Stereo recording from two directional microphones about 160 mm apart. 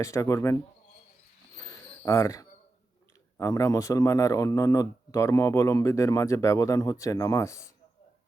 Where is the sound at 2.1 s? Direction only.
20° left (ahead or behind).